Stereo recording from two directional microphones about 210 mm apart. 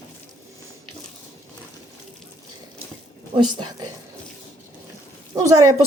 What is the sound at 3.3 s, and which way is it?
Speech, 25° right (ahead or behind).